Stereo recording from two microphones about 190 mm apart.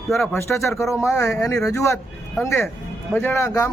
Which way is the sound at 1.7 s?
15° left (ahead or behind).